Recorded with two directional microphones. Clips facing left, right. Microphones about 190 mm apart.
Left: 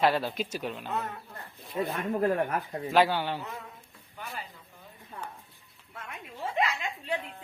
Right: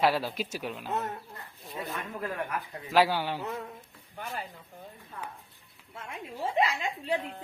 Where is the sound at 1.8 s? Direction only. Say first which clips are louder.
Left 9 dB; 45° left (ahead or behind).